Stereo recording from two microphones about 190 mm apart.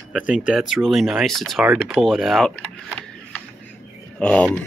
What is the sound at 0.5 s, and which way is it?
Speech, centre (ahead or behind).